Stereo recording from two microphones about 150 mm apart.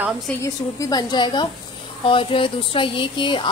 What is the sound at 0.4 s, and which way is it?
A woman's voice, 20° left (ahead or behind).